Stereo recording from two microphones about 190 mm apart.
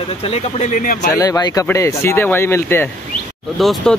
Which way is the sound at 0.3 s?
35° left (ahead or behind).